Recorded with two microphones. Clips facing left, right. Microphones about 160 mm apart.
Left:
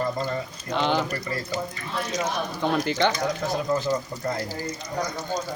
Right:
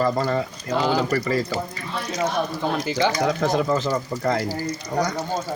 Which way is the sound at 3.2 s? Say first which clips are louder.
Right 5 dB; 90° right.